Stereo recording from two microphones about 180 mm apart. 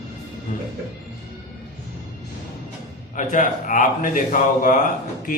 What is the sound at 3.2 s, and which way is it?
A man's voice, 45° left (ahead or behind).